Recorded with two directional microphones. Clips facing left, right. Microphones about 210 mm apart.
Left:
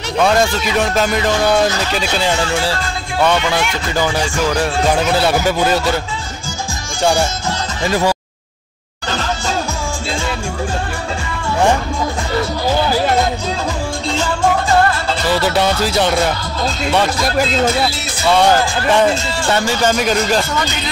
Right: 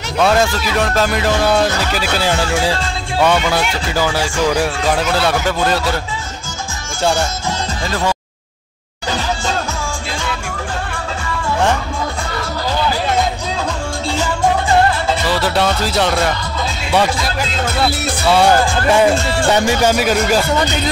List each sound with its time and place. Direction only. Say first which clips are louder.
0.3 s speech: even; centre (ahead or behind)
5.3 s speech: left 2 dB; 5° left (ahead or behind)
15.4 s speech: left 1 dB; centre (ahead or behind)
18.3 s speech: even; 10° right (ahead or behind)
19.1 s speech: right 4 dB; 55° right (ahead or behind)
19.5 s speech: right 1 dB; 15° right (ahead or behind)